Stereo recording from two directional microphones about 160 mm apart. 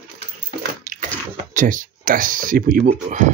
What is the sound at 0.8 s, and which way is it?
Bathtub, 55° right (ahead or behind).